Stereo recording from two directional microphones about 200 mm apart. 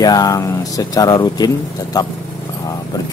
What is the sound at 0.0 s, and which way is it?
Speech, 20° left (ahead or behind).